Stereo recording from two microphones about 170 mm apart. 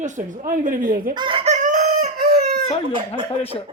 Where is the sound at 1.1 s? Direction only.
30° right (ahead or behind); by 2.4 s 65° right (ahead or behind).